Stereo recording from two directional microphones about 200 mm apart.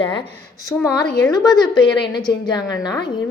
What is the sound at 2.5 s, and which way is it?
Speech, 20° left (ahead or behind).